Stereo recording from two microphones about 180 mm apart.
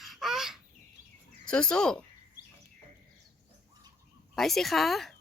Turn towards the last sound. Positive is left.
turn(degrees=0)  # may be behind; listen again after turning